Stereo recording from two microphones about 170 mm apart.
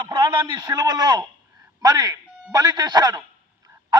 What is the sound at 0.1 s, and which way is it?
A man's voice, 25° right (ahead or behind).